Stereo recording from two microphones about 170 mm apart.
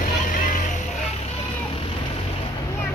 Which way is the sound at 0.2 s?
50° left (ahead or behind).